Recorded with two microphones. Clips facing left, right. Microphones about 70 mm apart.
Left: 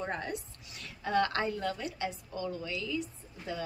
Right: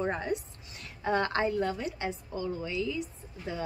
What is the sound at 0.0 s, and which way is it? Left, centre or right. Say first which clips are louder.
A woman's voice: right 5 dB; right.